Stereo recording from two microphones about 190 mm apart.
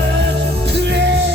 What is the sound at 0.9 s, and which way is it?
Music, 65° right (ahead or behind).